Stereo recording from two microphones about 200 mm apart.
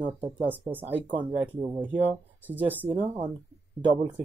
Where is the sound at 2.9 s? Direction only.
25° right (ahead or behind).